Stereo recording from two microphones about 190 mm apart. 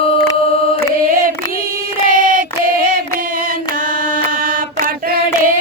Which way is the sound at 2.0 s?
45° right (ahead or behind).